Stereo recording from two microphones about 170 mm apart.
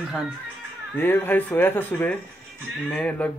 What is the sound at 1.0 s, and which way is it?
Speech, 10° left (ahead or behind).